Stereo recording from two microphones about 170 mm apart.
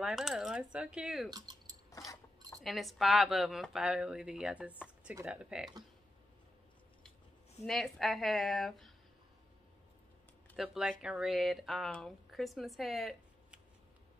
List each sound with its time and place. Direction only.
0.0 s speech: centre (ahead or behind)
1.3 s a sound: 25° right (ahead or behind)
1.9 s a sound: 20° left (ahead or behind)
2.5 s speech: centre (ahead or behind)
7.6 s speech: centre (ahead or behind)
10.5 s speech: centre (ahead or behind)